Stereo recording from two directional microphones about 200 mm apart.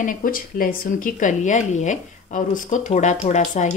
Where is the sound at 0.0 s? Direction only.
45° left (ahead or behind).